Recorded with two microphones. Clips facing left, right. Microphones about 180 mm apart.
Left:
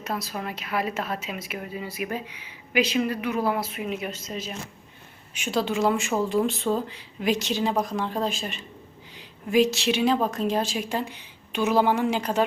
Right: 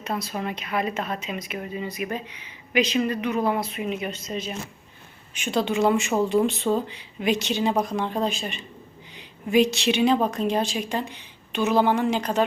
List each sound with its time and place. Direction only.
0.0 s speech: centre (ahead or behind)